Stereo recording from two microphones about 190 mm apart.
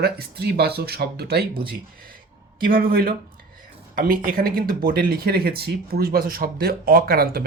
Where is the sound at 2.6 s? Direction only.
50° right (ahead or behind).